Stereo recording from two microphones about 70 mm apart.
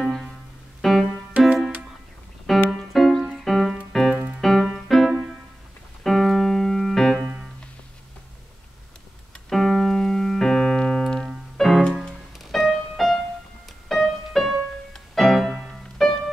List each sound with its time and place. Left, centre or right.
0.0 s music: centre
1.3 s music: centre
2.5 s keyboard: centre
2.9 s music: centre
6.0 s keyboard: centre
9.5 s keyboard: centre
11.5 s music: centre